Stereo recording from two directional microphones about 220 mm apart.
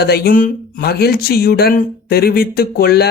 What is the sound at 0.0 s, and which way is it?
Speech, 45° left (ahead or behind).